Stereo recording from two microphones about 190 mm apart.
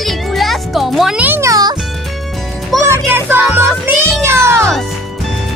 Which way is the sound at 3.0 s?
10° right (ahead or behind).